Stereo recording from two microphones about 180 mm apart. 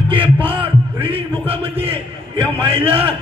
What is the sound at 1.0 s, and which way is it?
A man's voice, 30° right (ahead or behind).